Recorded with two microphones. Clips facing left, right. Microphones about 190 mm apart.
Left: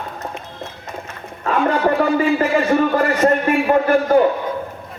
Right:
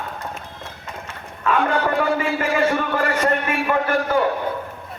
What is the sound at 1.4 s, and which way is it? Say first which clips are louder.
Speech: left 3 dB; 35° left (ahead or behind).